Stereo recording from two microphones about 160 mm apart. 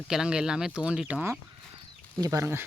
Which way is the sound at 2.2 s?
20° right (ahead or behind).